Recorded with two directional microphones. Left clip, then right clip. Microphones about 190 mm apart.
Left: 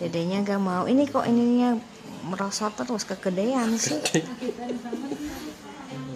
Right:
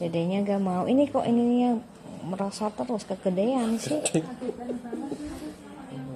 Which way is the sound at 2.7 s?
10° left (ahead or behind).